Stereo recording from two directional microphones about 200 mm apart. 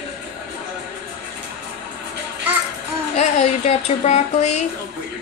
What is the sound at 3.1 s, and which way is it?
A woman's voice, 35° left (ahead or behind).